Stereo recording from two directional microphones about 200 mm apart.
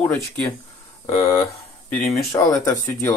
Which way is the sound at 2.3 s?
15° left (ahead or behind).